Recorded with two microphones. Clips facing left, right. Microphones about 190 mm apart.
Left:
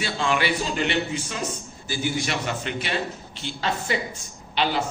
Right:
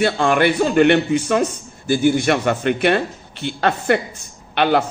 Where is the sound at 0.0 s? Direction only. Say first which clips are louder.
Right 9 dB; 55° right (ahead or behind).